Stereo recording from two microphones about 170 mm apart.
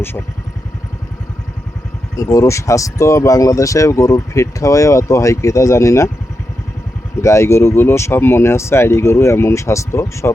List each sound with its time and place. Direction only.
2.1 s speech: 15° left (ahead or behind)
7.2 s speech: 15° left (ahead or behind)